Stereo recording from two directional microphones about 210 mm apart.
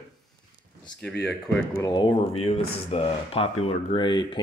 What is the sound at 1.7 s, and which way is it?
Speech, 20° left (ahead or behind).